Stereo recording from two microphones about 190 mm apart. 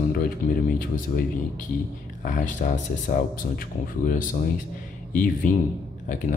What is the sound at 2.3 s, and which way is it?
Speech, 40° left (ahead or behind).